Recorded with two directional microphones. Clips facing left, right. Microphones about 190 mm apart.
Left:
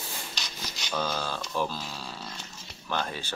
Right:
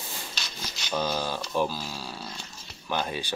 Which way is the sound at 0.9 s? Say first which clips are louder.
Right 3 dB; 10° right (ahead or behind).